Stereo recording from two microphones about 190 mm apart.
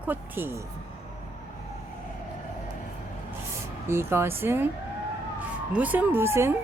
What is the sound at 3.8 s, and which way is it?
Speech, 15° right (ahead or behind).